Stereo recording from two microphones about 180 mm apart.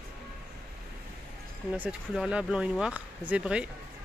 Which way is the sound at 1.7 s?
5° right (ahead or behind).